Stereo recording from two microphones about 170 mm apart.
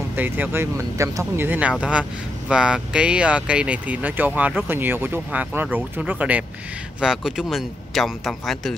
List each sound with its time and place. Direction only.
0.1 s speech: 10° right (ahead or behind)